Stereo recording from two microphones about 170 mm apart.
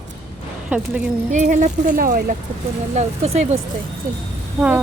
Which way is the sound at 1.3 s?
45° right (ahead or behind).